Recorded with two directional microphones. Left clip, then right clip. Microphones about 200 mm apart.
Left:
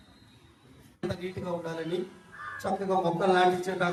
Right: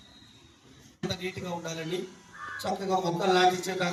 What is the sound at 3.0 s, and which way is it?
Speech, 40° left (ahead or behind).